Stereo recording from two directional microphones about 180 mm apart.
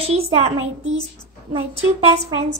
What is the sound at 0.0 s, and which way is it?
Speech, 35° right (ahead or behind).